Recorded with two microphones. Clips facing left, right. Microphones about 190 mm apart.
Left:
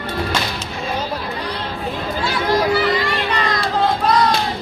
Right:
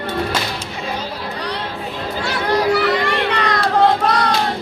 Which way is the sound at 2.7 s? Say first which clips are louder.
Right 1 dB; 65° right (ahead or behind).